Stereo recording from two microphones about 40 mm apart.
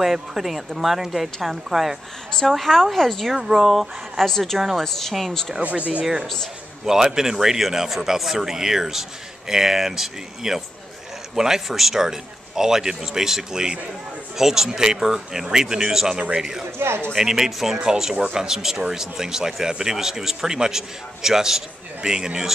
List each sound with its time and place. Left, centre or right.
0.0 s a woman's voice: centre
5.6 s speech: right
6.2 s speech: centre
6.9 s speech: centre
16.7 s speech: right
17.2 s speech: centre